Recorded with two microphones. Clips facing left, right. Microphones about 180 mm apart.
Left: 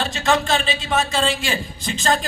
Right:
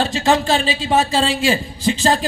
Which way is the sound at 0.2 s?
30° right (ahead or behind).